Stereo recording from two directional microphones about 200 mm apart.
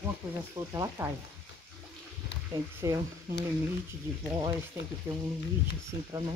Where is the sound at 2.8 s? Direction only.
15° right (ahead or behind).